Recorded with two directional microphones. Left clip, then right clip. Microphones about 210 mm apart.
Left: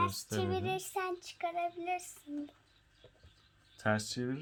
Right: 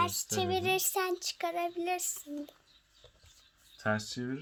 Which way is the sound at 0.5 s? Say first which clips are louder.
Right 5 dB; 45° right (ahead or behind).